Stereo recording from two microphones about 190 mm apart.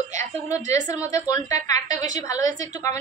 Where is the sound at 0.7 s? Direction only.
40° right (ahead or behind).